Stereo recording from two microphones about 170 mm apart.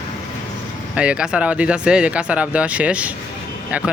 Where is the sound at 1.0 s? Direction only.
5° right (ahead or behind).